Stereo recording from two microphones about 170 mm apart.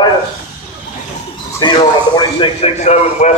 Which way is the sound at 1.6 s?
25° left (ahead or behind).